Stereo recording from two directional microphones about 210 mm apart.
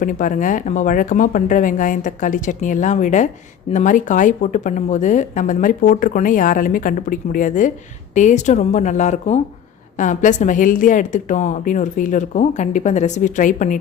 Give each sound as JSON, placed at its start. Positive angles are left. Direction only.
{"t": 0.0, "sound": "speech", "side_deg": 40}